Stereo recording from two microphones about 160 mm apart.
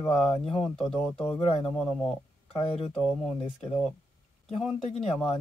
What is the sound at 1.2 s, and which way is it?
Speech, 35° left (ahead or behind).